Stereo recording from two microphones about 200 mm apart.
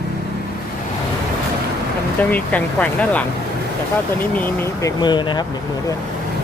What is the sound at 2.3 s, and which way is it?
Speech, 5° left (ahead or behind).